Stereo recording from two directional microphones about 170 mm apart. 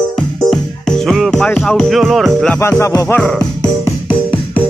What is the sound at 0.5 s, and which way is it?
Music, centre (ahead or behind).